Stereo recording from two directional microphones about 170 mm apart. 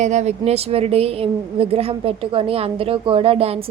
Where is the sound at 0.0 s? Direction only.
45° right (ahead or behind).